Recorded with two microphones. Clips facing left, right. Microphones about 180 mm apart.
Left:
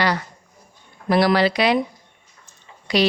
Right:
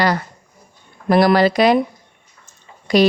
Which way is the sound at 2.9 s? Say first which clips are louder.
Right 5 dB; 45° right (ahead or behind).